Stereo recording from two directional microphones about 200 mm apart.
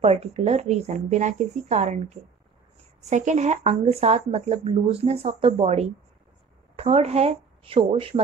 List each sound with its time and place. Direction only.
0.0 s speech: 30° right (ahead or behind)
3.0 s speech: 35° right (ahead or behind)